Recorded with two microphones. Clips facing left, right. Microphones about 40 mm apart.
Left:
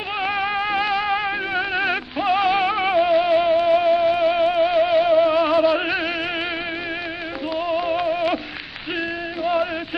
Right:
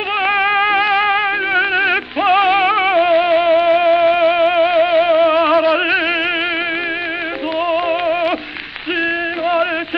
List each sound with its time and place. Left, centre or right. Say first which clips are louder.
0.2 s music: right 8 dB; right
7.5 s music: right 5 dB; right
9.4 s music: right 4 dB; right